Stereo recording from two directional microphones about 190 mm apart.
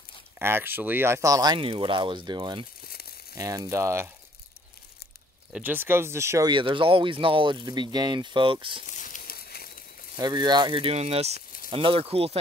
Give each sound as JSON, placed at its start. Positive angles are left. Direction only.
{"t": 0.4, "sound": "speech", "side_deg": -10}
{"t": 5.5, "sound": "speech", "side_deg": -10}
{"t": 8.8, "sound": "crumpling", "side_deg": 40}
{"t": 10.1, "sound": "speech", "side_deg": -20}